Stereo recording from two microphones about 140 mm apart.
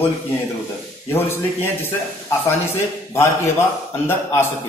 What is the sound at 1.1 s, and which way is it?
Speech, 15° left (ahead or behind).